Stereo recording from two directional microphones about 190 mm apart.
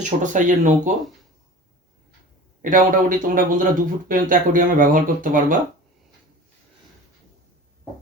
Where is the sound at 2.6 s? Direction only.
45° right (ahead or behind).